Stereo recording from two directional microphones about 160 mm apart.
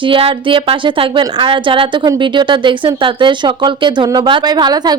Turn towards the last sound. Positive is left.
turn(degrees=-25)  # may be behind; listen again after turning